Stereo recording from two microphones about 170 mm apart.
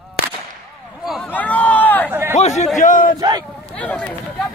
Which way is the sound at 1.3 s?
10° left (ahead or behind).